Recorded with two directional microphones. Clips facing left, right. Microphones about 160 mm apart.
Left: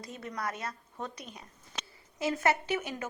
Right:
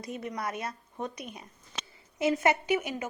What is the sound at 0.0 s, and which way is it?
A woman's voice, 20° right (ahead or behind).